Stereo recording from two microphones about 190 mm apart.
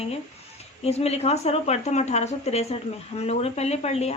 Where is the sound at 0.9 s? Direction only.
35° left (ahead or behind).